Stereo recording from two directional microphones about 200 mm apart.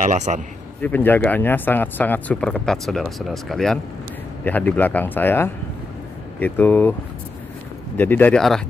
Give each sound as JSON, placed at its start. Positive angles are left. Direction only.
{"t": 0.0, "sound": "a man's voice", "side_deg": -35}
{"t": 0.8, "sound": "speech", "side_deg": 10}
{"t": 8.0, "sound": "speech", "side_deg": 10}